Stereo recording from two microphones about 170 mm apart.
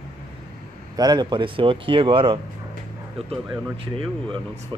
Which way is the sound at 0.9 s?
25° right (ahead or behind).